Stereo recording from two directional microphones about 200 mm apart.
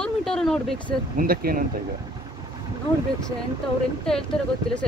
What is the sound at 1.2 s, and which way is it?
Speech, 45° right (ahead or behind).